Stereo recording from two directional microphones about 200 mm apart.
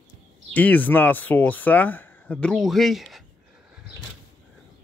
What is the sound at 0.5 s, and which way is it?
Speech, 10° left (ahead or behind).